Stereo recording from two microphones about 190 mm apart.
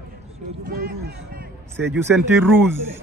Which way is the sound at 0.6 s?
50° right (ahead or behind).